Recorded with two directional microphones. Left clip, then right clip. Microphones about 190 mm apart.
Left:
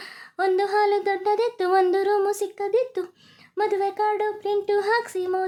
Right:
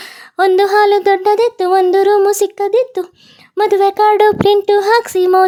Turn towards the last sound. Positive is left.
turn(degrees=-45)  # may be behind; listen again after turning